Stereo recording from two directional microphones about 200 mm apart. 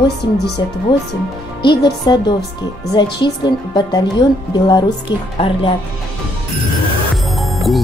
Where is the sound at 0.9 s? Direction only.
25° left (ahead or behind).